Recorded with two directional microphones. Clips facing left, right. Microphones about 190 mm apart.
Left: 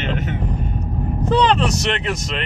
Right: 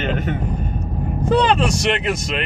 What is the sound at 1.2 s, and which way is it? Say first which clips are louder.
Speech: even; 10° right (ahead or behind).